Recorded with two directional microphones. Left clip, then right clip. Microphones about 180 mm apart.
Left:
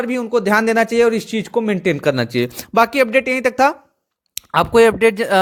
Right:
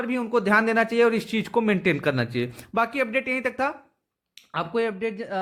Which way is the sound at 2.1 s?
45° left (ahead or behind).